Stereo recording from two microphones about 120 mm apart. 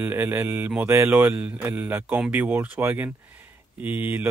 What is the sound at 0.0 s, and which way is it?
Mantra, 15° right (ahead or behind).